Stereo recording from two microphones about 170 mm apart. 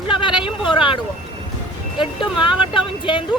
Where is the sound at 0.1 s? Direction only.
30° left (ahead or behind).